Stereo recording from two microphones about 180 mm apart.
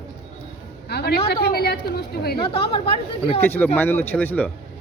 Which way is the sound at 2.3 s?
30° left (ahead or behind).